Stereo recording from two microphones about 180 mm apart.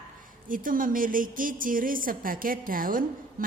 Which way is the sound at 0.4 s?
50° right (ahead or behind).